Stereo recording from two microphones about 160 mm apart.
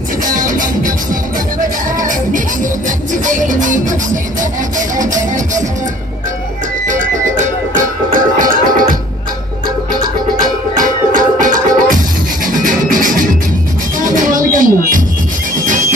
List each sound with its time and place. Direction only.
0.2 s music: 55° right (ahead or behind)
2.0 s music: 55° right (ahead or behind)
6.9 s music: 50° right (ahead or behind)
10.4 s music: 55° right (ahead or behind)